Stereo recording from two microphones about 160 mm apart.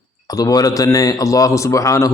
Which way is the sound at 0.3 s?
20° left (ahead or behind).